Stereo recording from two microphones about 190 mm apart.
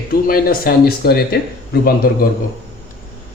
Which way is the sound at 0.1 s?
50° left (ahead or behind).